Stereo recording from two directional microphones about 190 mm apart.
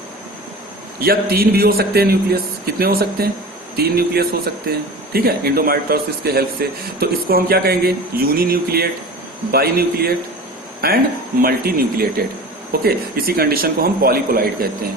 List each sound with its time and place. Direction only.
0.9 s a man's voice: 50° right (ahead or behind)